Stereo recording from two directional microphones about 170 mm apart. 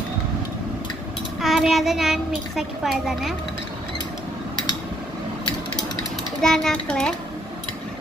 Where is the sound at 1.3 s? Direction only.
Centre (ahead or behind).